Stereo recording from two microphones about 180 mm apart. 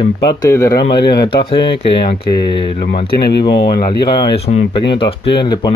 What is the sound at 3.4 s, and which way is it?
Speech, 25° left (ahead or behind).